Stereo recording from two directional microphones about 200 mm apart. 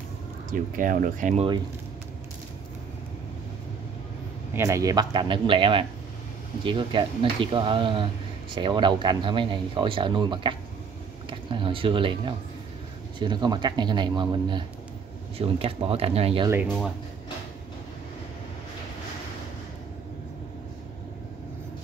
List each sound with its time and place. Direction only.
0.5 s speech: 45° right (ahead or behind)
4.6 s speech: 15° right (ahead or behind)